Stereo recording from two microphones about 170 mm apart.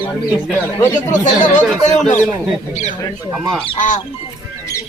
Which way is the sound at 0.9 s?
45° left (ahead or behind).